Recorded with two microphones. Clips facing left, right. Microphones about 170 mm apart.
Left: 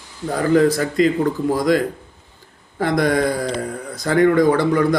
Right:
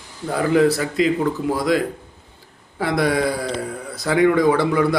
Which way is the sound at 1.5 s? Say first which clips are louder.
Left 3 dB; 45° left (ahead or behind).